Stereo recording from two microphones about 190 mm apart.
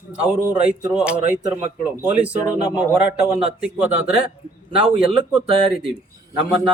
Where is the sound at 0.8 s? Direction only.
5° right (ahead or behind).